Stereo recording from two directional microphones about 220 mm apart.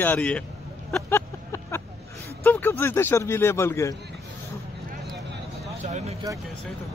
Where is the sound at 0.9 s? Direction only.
10° left (ahead or behind).